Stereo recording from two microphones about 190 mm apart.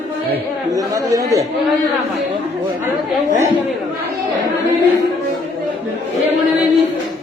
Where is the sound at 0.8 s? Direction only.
20° right (ahead or behind).